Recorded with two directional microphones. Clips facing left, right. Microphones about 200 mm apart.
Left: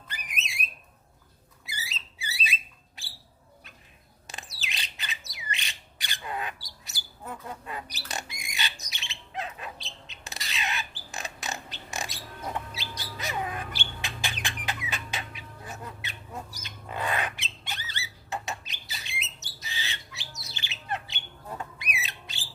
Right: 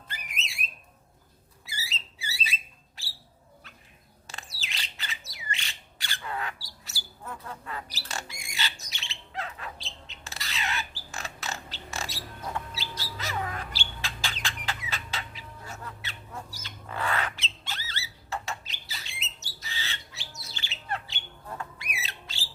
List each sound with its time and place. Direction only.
0.1 s alarm: 15° left (ahead or behind)
1.6 s a sound: 15° left (ahead or behind)
4.3 s squawk: 20° left (ahead or behind)
11.1 s a sound: 15° left (ahead or behind)
14.8 s chicken: 15° left (ahead or behind)
16.6 s a sound: 20° left (ahead or behind)
18.3 s squawk: 20° left (ahead or behind)
20.5 s bird: 15° left (ahead or behind)
21.6 s rodents: 20° left (ahead or behind)